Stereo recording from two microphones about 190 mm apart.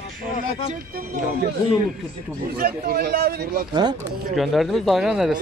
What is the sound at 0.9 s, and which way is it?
Speech, 50° right (ahead or behind).